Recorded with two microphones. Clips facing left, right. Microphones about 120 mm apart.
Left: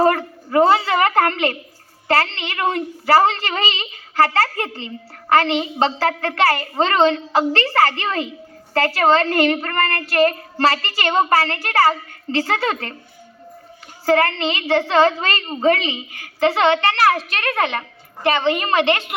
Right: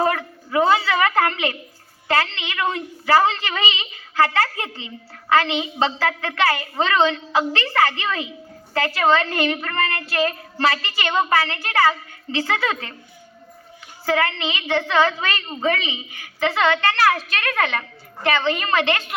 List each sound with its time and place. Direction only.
0.0 s a woman's voice: 40° left (ahead or behind)
14.0 s a woman's voice: 35° left (ahead or behind)